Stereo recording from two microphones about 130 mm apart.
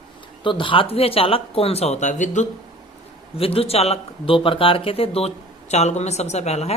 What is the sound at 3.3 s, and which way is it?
A man's voice, 45° left (ahead or behind).